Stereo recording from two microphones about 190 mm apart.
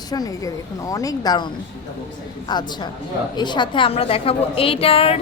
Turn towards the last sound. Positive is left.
turn(degrees=30)  # may be behind; listen again after turning